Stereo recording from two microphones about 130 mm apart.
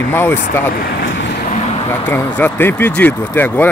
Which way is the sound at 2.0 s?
15° left (ahead or behind).